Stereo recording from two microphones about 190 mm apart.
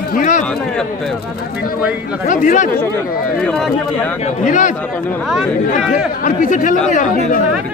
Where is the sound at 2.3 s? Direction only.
40° left (ahead or behind).